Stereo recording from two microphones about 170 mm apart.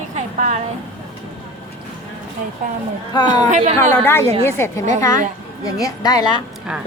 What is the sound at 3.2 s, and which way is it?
Speech, 25° left (ahead or behind).